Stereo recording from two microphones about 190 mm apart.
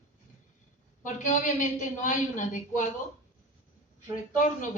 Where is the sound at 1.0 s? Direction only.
40° left (ahead or behind).